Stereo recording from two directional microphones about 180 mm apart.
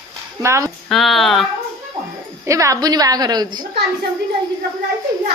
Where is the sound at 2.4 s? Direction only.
15° right (ahead or behind).